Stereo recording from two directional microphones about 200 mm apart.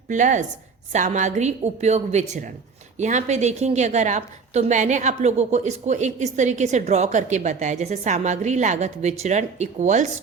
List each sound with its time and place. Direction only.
0.1 s a woman's voice: 40° right (ahead or behind)